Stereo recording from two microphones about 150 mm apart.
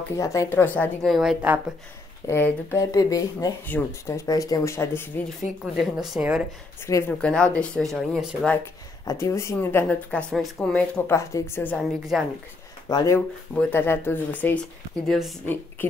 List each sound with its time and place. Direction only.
0.1 s speech: 20° left (ahead or behind)
1.0 s speech: centre (ahead or behind)
2.2 s speech: 15° left (ahead or behind)
5.8 s speech: 5° right (ahead or behind)
6.9 s speech: 20° left (ahead or behind)
7.2 s speech: 5° left (ahead or behind)
9.0 s speech: 20° left (ahead or behind)
12.1 s speech: centre (ahead or behind)
12.8 s speech: 25° left (ahead or behind)
13.6 s speech: 15° left (ahead or behind)
15.0 s speech: centre (ahead or behind)
15.4 s speech: 15° left (ahead or behind)